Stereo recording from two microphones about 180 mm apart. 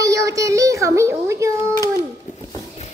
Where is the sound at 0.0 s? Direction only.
20° right (ahead or behind).